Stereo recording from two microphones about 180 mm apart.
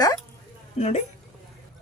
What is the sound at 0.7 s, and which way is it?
Speech, 40° left (ahead or behind).